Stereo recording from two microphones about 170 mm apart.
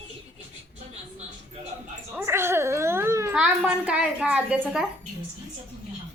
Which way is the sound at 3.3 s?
5° right (ahead or behind).